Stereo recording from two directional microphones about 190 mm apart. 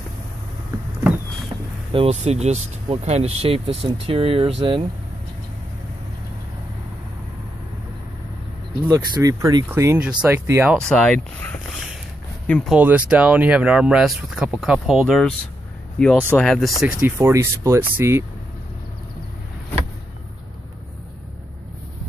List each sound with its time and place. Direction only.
1.9 s speech: 30° right (ahead or behind)
8.8 s speech: 15° right (ahead or behind)
10.8 s speech: 5° left (ahead or behind)
12.7 s speech: 10° right (ahead or behind)
16.3 s speech: centre (ahead or behind)
16.8 s speech: 10° right (ahead or behind)